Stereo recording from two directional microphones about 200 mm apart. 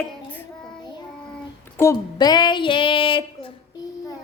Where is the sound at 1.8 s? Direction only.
15° left (ahead or behind).